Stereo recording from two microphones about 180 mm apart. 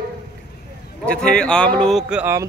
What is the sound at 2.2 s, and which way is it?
Speech, 15° right (ahead or behind).